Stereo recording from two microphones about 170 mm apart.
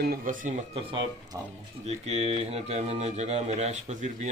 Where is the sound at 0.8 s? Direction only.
30° right (ahead or behind).